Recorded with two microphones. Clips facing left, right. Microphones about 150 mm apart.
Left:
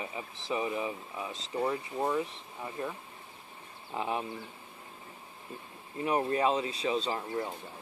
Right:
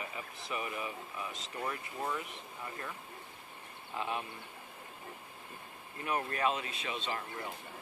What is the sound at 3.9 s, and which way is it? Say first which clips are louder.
Speech: left 4 dB; 25° left (ahead or behind).